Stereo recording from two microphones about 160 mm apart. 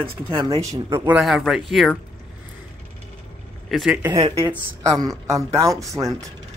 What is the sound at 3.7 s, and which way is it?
Speech, centre (ahead or behind).